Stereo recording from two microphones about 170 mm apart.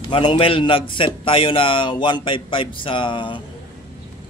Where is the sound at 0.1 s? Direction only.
30° left (ahead or behind).